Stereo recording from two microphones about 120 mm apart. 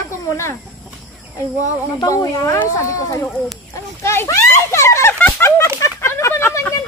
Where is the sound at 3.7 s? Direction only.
20° left (ahead or behind).